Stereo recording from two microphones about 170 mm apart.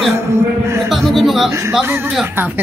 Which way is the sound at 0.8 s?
Centre (ahead or behind).